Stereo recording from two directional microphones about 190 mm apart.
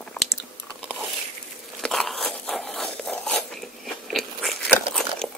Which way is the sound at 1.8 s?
Centre (ahead or behind).